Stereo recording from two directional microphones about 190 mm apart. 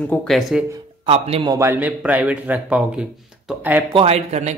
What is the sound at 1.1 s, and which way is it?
Speech, 30° right (ahead or behind).